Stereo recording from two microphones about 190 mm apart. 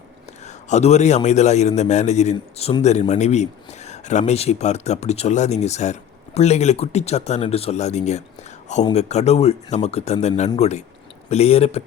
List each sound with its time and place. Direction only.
0.4 s a man's voice: 35° left (ahead or behind)